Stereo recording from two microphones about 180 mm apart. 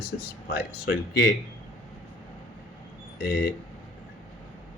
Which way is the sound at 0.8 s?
65° left (ahead or behind).